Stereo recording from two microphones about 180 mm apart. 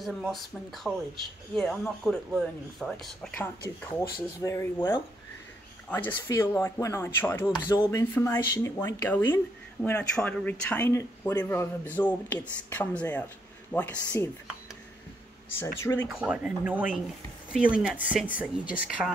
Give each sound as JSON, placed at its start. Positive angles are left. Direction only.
{"t": 0.0, "sound": "speech", "side_deg": 0}
{"t": 4.4, "sound": "speech", "side_deg": 15}
{"t": 5.9, "sound": "speech", "side_deg": 10}
{"t": 15.6, "sound": "speech", "side_deg": 15}
{"t": 16.1, "sound": "speech", "side_deg": -5}